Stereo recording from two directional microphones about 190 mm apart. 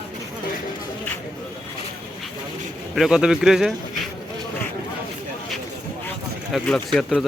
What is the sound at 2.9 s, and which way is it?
Speech, 5° right (ahead or behind).